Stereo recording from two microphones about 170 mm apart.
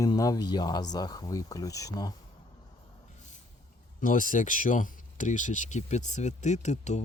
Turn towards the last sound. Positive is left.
turn(degrees=45)  # may be behind; listen again after turning